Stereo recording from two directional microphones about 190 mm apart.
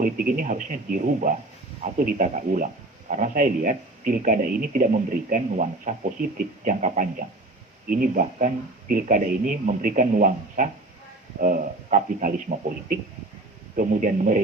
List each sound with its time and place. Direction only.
0.0 s speech: 45° right (ahead or behind)